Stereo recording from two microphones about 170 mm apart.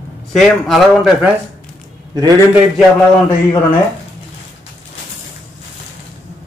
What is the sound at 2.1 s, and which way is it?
Speech, 25° right (ahead or behind).